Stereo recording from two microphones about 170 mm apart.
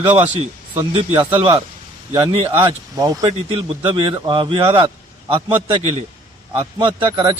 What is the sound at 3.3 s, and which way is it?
Speech, 35° right (ahead or behind).